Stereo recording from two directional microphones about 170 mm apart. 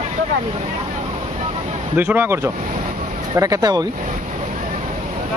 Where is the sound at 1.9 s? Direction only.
10° right (ahead or behind).